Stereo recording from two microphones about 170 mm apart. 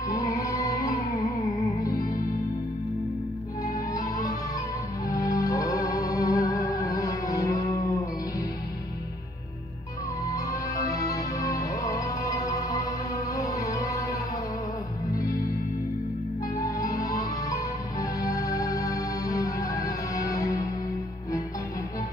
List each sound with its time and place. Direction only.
0.1 s music: 20° left (ahead or behind)
3.6 s music: 20° left (ahead or behind)
5.1 s music: 20° left (ahead or behind)
10.3 s music: 20° left (ahead or behind)
16.5 s music: 20° left (ahead or behind)